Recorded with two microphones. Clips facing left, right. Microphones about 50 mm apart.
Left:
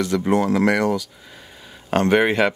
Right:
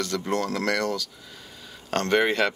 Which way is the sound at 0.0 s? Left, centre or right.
Centre.